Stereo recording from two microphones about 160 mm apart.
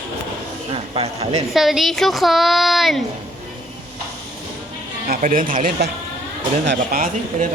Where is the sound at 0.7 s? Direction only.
35° right (ahead or behind).